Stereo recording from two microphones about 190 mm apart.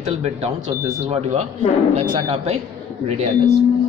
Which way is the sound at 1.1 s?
35° right (ahead or behind).